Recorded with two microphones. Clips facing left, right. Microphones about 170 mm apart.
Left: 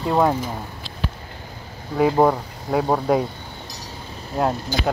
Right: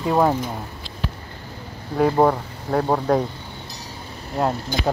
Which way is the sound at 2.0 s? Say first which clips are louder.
Even; 5° left (ahead or behind).